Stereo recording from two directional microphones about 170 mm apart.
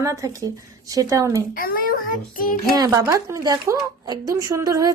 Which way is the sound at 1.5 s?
60° left (ahead or behind).